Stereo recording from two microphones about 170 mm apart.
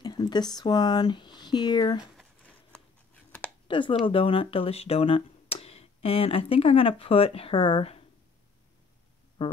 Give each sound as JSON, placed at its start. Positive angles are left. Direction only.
{"t": 0.0, "sound": "speech", "side_deg": 25}
{"t": 3.6, "sound": "speech", "side_deg": 30}